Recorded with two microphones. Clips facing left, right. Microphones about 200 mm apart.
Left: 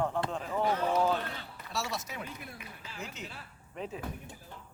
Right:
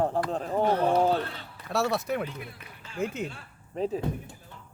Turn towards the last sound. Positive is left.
turn(degrees=-35)  # may be behind; listen again after turning